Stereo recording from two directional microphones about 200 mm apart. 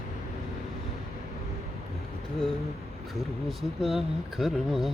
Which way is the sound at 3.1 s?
Centre (ahead or behind).